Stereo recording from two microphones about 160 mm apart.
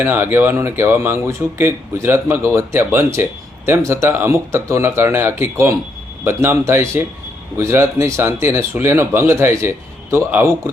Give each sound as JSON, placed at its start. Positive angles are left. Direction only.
{"t": 0.0, "sound": "speech", "side_deg": -15}